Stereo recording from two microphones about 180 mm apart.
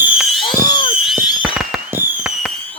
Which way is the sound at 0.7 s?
25° left (ahead or behind).